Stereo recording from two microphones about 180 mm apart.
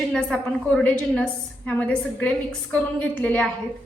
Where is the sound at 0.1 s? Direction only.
5° left (ahead or behind).